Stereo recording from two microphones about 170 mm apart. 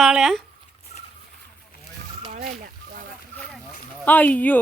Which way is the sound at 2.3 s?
45° right (ahead or behind).